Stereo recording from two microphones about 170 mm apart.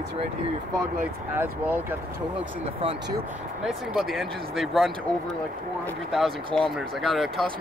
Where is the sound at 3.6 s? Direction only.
Centre (ahead or behind).